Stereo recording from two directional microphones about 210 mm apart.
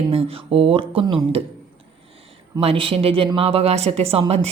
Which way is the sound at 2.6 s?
25° right (ahead or behind).